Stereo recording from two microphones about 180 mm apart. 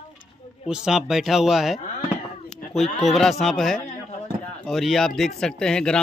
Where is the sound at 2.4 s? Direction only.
Centre (ahead or behind).